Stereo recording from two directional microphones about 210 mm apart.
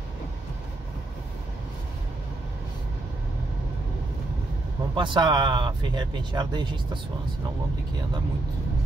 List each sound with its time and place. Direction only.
4.9 s speech: 20° right (ahead or behind)